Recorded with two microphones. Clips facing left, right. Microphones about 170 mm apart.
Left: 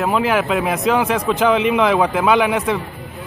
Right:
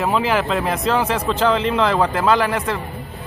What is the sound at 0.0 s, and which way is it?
A man's voice, 5° left (ahead or behind).